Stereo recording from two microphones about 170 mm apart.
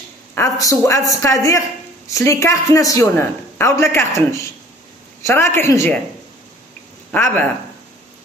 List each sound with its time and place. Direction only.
0.3 s speech: 20° left (ahead or behind)
7.1 s speech: 10° left (ahead or behind)